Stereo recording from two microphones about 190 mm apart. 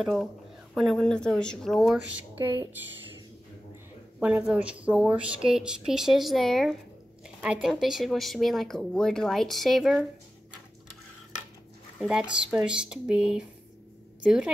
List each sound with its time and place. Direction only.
0.0 s speech: centre (ahead or behind)
2.3 s speech: 20° right (ahead or behind)
4.2 s speech: 5° right (ahead or behind)
12.0 s speech: 5° right (ahead or behind)